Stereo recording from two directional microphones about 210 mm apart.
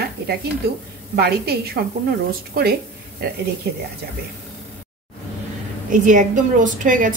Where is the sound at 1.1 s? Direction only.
50° right (ahead or behind).